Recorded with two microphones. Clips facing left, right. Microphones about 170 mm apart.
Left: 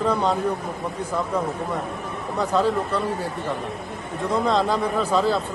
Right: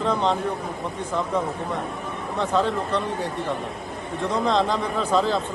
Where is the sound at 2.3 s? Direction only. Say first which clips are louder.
Left 2 dB; 5° left (ahead or behind).